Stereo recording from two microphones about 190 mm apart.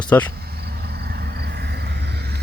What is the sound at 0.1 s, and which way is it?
Speech, 10° left (ahead or behind).